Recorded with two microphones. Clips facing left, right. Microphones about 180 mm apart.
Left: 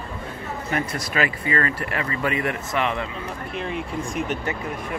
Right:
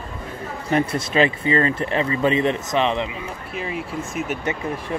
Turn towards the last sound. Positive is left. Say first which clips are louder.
# right 3 dB
turn(degrees=-30)  # may be behind; listen again after turning